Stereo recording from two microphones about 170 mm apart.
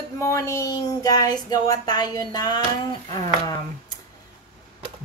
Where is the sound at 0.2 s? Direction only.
20° left (ahead or behind).